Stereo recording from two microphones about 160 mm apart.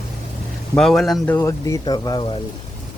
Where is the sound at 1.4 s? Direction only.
20° left (ahead or behind).